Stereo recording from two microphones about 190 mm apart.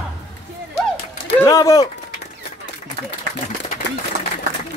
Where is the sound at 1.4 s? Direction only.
20° left (ahead or behind).